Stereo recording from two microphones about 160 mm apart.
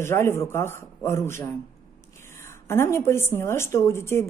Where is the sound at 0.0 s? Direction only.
15° left (ahead or behind).